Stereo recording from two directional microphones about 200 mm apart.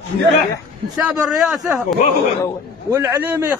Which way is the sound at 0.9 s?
Centre (ahead or behind).